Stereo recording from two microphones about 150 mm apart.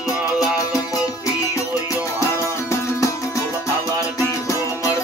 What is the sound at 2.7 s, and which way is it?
Music, 20° left (ahead or behind).